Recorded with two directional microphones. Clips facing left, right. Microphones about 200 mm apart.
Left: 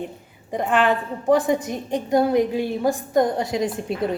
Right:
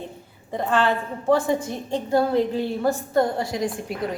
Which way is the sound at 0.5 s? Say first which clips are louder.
Left 2 dB; 15° left (ahead or behind).